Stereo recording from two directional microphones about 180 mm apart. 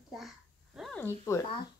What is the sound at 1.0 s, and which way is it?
Speech, 15° left (ahead or behind).